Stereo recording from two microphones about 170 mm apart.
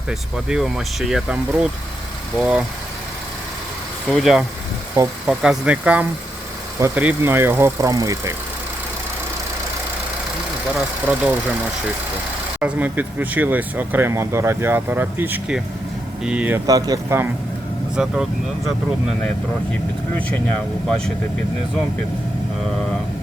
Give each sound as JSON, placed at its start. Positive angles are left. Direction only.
{"t": 0.1, "sound": "speech", "side_deg": 0}
{"t": 4.1, "sound": "speech", "side_deg": 0}
{"t": 10.8, "sound": "speech", "side_deg": -5}
{"t": 12.5, "sound": "speech", "side_deg": -10}
{"t": 16.6, "sound": "speech", "side_deg": -20}
{"t": 17.9, "sound": "speech", "side_deg": -5}
{"t": 19.7, "sound": "speech", "side_deg": 10}
{"t": 22.7, "sound": "speech", "side_deg": 5}